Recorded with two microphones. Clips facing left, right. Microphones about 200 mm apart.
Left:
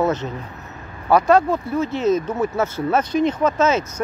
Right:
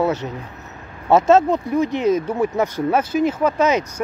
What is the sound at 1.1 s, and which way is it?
Speech, 25° right (ahead or behind).